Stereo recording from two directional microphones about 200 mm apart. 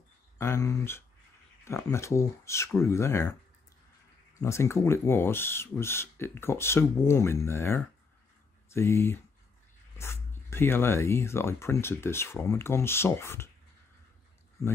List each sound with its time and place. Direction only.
0.4 s speech: 15° left (ahead or behind)
4.4 s speech: 15° left (ahead or behind)
14.6 s speech: 15° left (ahead or behind)